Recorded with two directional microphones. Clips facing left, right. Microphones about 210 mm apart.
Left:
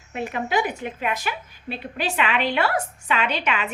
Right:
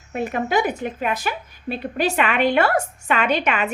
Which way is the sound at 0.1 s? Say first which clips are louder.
Right 3 dB; 45° right (ahead or behind).